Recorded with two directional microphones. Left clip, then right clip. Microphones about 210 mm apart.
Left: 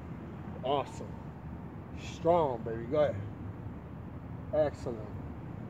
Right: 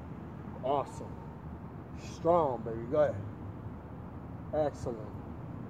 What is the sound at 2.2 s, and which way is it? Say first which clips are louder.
Speech: even; centre (ahead or behind).